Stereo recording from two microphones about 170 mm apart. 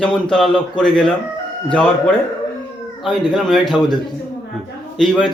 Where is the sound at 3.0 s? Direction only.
Centre (ahead or behind).